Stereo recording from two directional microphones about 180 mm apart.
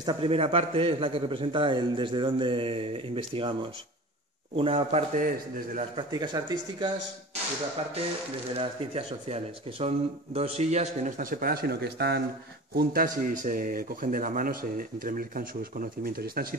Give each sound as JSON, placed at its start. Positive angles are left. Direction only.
{"t": 0.0, "sound": "a man's voice", "side_deg": -30}
{"t": 4.6, "sound": "speech", "side_deg": -30}
{"t": 5.9, "sound": "a man's voice", "side_deg": -25}
{"t": 8.5, "sound": "speech", "side_deg": -30}
{"t": 12.7, "sound": "speech", "side_deg": -55}